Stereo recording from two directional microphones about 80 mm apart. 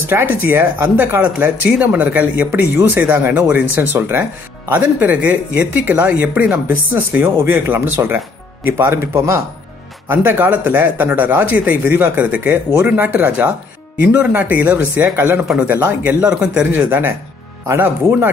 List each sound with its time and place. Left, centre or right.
0.1 s speech: right
10.2 s speech: right